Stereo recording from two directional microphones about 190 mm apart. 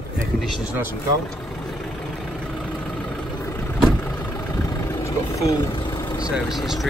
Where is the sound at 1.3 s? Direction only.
Centre (ahead or behind); by 6.0 s 20° left (ahead or behind).